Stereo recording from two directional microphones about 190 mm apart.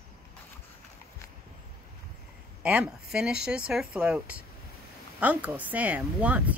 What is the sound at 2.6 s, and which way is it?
Speech, 5° right (ahead or behind).